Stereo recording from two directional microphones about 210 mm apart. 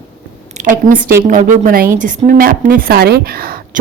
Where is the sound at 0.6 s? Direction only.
40° right (ahead or behind).